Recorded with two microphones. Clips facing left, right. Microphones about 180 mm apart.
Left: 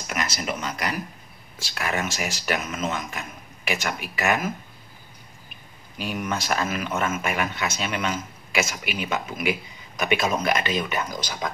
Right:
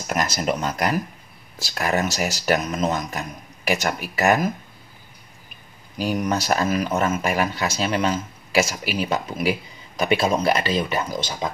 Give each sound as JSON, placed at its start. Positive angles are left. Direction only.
{"t": 0.0, "sound": "speech", "side_deg": -40}
{"t": 5.9, "sound": "speech", "side_deg": -40}